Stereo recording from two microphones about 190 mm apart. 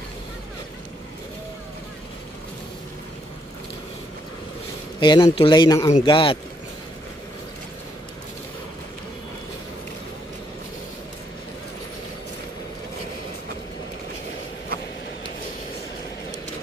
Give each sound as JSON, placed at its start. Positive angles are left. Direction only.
{"t": 5.0, "sound": "a man's voice", "side_deg": 25}